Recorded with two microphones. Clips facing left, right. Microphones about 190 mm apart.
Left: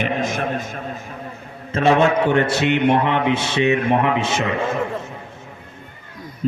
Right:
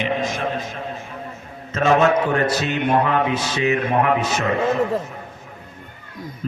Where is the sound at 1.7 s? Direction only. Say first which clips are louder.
Left 1 dB; 30° left (ahead or behind).